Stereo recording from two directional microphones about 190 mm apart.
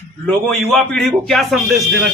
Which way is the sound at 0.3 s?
Centre (ahead or behind).